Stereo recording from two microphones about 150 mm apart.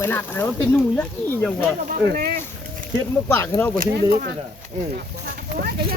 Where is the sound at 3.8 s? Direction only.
90° right.